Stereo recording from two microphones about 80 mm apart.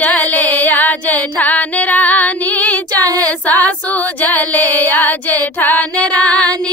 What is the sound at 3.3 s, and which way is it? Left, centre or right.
Female singing, centre.